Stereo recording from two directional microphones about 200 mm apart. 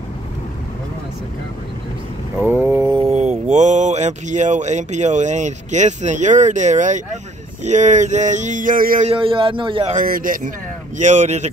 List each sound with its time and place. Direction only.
2.4 s mantra: 10° right (ahead or behind)
3.1 s speech: 35° right (ahead or behind)
7.6 s a sound: 35° right (ahead or behind)
9.1 s a man's voice: 25° right (ahead or behind)
9.9 s speech: 45° right (ahead or behind)
11.0 s a sound: 35° right (ahead or behind)